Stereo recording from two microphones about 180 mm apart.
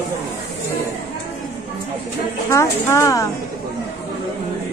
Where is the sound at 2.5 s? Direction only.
15° left (ahead or behind).